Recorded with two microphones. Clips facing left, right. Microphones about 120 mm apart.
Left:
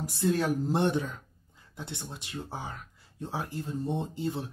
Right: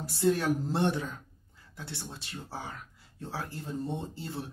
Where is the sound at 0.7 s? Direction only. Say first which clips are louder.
Left 2 dB; 20° left (ahead or behind).